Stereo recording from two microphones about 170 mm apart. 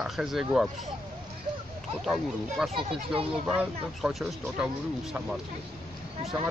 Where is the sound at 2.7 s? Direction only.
30° right (ahead or behind).